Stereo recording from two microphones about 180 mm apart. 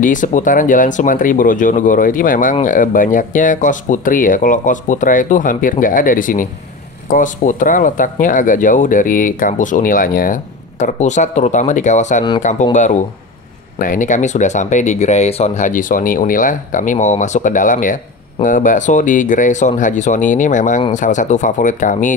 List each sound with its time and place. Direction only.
0.0 s speech: 45° left (ahead or behind)
13.7 s speech: 45° left (ahead or behind)